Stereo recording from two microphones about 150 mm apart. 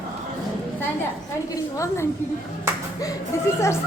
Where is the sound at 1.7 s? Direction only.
20° left (ahead or behind).